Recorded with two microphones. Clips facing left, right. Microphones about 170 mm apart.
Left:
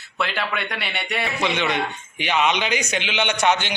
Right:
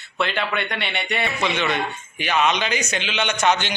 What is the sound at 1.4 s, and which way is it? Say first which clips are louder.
A man's voice: left 2 dB; 15° left (ahead or behind).